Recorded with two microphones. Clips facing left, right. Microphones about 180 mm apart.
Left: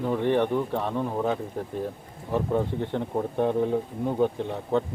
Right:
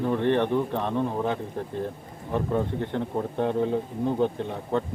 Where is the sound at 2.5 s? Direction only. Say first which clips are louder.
Even; 15° left (ahead or behind).